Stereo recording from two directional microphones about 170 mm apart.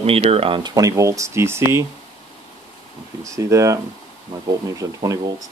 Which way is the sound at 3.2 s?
20° right (ahead or behind).